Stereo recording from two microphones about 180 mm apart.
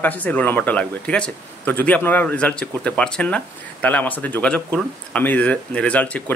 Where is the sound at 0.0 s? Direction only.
10° left (ahead or behind).